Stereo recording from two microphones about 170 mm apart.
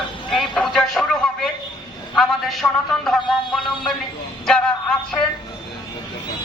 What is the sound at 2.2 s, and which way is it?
Music, centre (ahead or behind).